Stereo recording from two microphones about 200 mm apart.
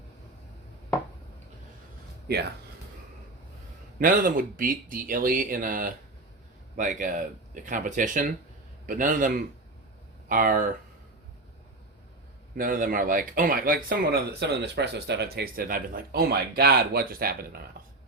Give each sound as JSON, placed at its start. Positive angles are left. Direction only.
{"t": 2.2, "sound": "speech", "side_deg": -55}
{"t": 3.9, "sound": "speech", "side_deg": -45}
{"t": 12.5, "sound": "speech", "side_deg": -45}
{"t": 17.7, "sound": "burping", "side_deg": -45}